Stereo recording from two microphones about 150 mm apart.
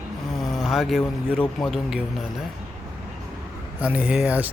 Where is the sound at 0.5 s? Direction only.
Centre (ahead or behind).